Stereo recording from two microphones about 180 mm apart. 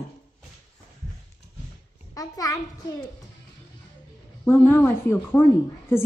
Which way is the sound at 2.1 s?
20° left (ahead or behind).